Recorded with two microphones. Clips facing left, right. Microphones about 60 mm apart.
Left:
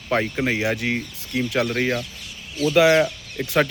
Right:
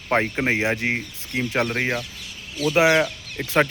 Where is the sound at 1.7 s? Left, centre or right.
Centre.